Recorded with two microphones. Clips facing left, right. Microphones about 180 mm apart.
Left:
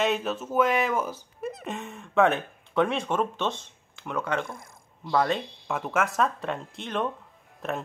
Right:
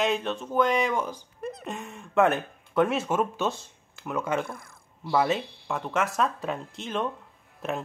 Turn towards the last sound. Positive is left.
turn(degrees=0)  # may be behind; listen again after turning